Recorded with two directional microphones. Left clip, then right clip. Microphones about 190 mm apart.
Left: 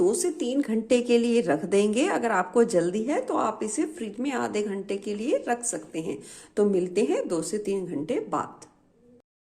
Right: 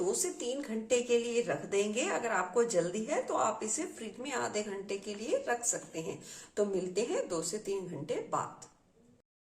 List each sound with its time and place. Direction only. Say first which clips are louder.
0.1 s a woman's voice: left 8 dB; 50° left (ahead or behind)